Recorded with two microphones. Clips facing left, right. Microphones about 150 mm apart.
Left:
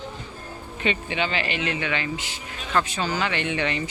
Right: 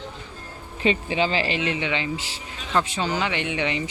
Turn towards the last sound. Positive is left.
turn(degrees=-15)  # may be behind; listen again after turning